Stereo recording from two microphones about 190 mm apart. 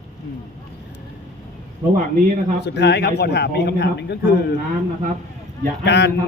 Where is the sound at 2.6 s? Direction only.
65° left (ahead or behind).